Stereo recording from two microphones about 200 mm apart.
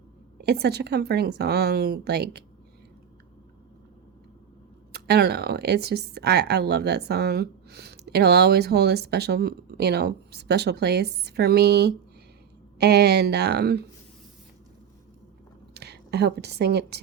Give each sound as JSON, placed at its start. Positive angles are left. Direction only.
{"t": 0.4, "sound": "speech", "side_deg": -55}
{"t": 4.9, "sound": "speech", "side_deg": -55}
{"t": 15.7, "sound": "a woman's voice", "side_deg": -55}